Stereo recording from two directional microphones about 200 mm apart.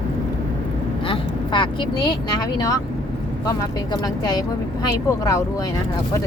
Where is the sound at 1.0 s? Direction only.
25° left (ahead or behind).